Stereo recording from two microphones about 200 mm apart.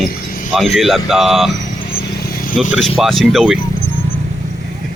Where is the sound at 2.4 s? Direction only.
40° left (ahead or behind).